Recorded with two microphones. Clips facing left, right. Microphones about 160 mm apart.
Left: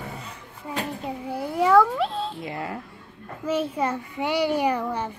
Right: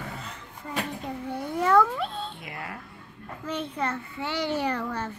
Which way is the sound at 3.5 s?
5° left (ahead or behind).